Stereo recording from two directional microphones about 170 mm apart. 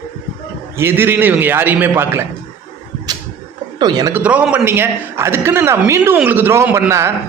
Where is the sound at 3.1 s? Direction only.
25° right (ahead or behind).